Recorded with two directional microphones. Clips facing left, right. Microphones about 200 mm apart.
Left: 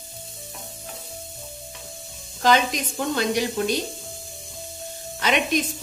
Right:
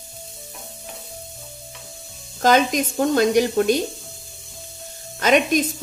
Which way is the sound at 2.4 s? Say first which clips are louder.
Right 3 dB; 45° right (ahead or behind).